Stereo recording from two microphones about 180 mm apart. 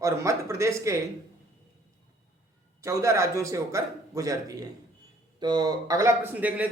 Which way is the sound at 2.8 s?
15° right (ahead or behind).